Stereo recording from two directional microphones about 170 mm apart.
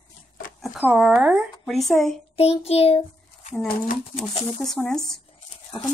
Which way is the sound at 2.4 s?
35° left (ahead or behind).